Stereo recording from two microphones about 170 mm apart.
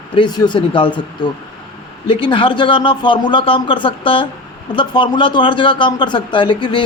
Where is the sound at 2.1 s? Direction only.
30° left (ahead or behind).